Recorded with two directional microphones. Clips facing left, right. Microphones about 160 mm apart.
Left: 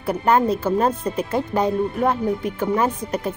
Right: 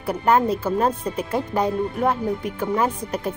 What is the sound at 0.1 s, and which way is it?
Speech, centre (ahead or behind).